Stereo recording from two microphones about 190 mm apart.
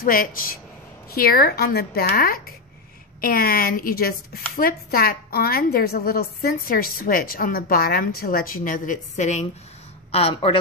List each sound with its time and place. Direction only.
0.0 s a woman's voice: 50° left (ahead or behind); by 10.6 s 30° left (ahead or behind)